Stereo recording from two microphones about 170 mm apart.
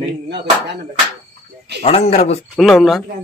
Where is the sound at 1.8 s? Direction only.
35° left (ahead or behind).